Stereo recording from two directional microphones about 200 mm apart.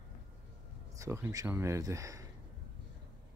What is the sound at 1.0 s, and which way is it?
Speech, 15° right (ahead or behind).